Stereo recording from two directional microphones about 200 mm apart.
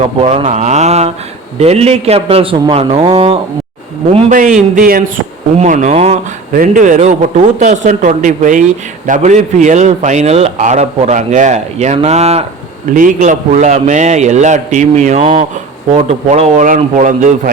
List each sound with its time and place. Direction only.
0.0 s a man's voice: 30° right (ahead or behind)
0.4 s a sound: 35° right (ahead or behind)
1.5 s a man's voice: 30° right (ahead or behind)
4.3 s a man's voice: 40° right (ahead or behind)